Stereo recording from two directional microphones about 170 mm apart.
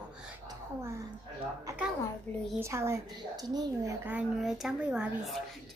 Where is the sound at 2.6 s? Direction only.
15° right (ahead or behind).